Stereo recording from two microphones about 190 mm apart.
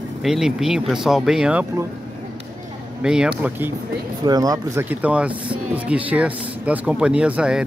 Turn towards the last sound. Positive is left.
turn(degrees=-5)  # may be behind; listen again after turning